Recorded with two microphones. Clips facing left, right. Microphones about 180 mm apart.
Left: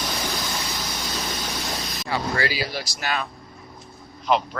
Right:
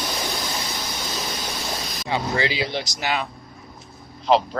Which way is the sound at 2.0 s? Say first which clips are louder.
Right 2 dB; 20° right (ahead or behind).